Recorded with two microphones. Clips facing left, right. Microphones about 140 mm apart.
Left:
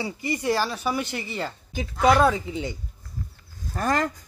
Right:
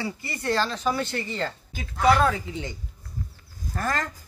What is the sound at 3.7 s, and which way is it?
Speech, 15° left (ahead or behind).